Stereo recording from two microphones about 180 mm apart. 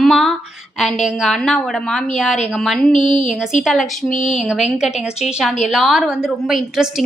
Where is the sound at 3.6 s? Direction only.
Centre (ahead or behind).